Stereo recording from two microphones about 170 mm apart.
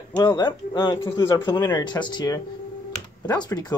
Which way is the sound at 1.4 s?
25° left (ahead or behind).